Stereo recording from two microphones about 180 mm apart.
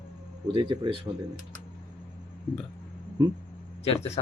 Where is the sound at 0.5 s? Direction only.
30° right (ahead or behind).